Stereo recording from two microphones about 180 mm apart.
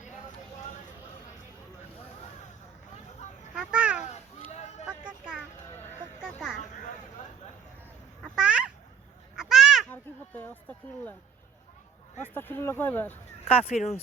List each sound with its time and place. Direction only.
3.5 s children playing: 5° right (ahead or behind)
4.5 s vehicle: 40° left (ahead or behind)
4.9 s a sound: 5° right (ahead or behind)
8.4 s a sound: 5° right (ahead or behind)
9.9 s speech: 10° left (ahead or behind)
12.2 s speech: 10° left (ahead or behind)
13.4 s speech: 35° left (ahead or behind)